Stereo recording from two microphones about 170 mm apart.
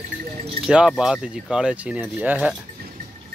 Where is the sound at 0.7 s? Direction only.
5° right (ahead or behind).